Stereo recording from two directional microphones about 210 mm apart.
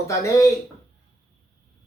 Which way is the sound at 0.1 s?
15° left (ahead or behind).